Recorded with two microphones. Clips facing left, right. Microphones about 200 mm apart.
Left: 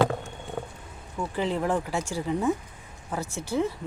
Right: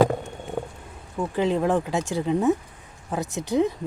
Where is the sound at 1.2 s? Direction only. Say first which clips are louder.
Right 5 dB; 15° right (ahead or behind).